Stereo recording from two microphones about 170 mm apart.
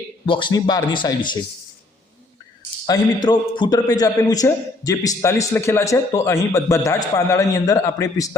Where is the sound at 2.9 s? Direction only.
25° left (ahead or behind).